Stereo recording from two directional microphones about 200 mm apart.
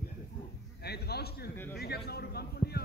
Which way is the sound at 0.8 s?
55° left (ahead or behind).